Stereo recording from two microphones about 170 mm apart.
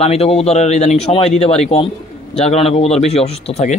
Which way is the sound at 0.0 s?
35° left (ahead or behind).